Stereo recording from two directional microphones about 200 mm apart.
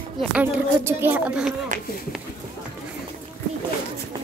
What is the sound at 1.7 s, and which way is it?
Speech, 40° right (ahead or behind).